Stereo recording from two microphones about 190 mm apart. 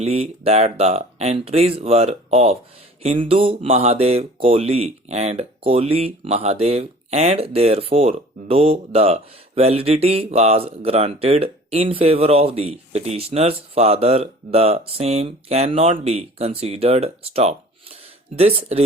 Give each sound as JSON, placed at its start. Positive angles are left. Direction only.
{"t": 0.0, "sound": "speech", "side_deg": -30}